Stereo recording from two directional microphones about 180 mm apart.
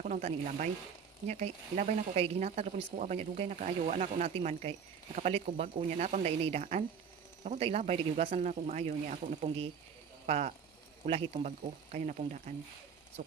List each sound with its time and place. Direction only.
0.0 s speech: 40° right (ahead or behind)